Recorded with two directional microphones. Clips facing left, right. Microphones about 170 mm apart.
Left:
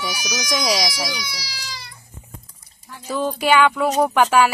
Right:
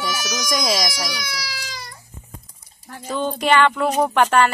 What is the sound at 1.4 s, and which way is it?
Baby cry, 55° right (ahead or behind).